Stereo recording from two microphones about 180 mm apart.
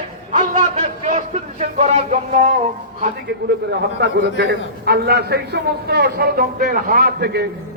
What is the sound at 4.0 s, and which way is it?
A man's voice, 70° right (ahead or behind).